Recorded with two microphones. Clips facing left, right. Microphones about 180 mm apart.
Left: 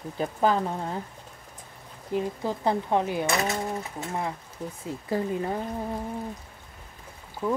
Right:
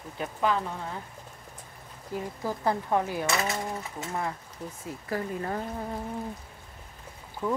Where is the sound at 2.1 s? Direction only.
20° left (ahead or behind).